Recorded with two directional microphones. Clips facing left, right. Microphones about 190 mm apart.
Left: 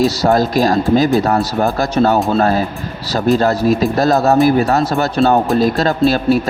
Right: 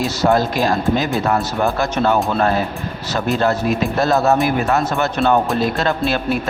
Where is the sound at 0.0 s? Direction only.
35° left (ahead or behind).